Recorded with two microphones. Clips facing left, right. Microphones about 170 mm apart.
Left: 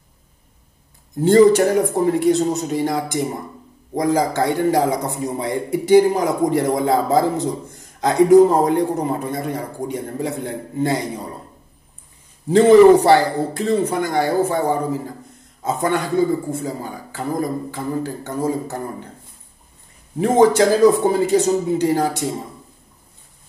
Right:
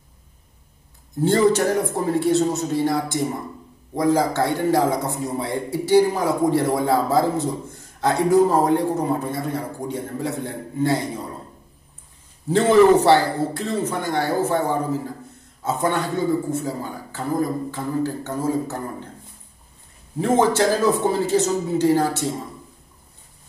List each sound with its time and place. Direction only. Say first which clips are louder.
1.2 s a man's voice: left 5 dB; 15° left (ahead or behind)
13.0 s a man's voice: left 2 dB; 15° left (ahead or behind)
20.2 s a man's voice: left 4 dB; 15° left (ahead or behind)